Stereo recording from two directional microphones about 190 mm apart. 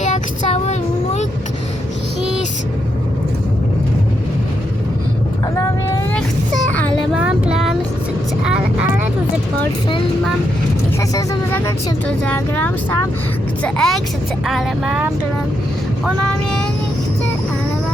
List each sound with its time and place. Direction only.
0.0 s a sound: 35° left (ahead or behind)
7.2 s music: 5° right (ahead or behind)
11.1 s speech: 15° left (ahead or behind)
13.6 s vehicle: 5° left (ahead or behind)